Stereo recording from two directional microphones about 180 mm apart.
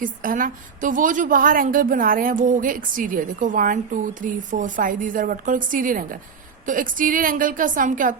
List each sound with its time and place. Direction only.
0.0 s a woman's voice: 50° right (ahead or behind)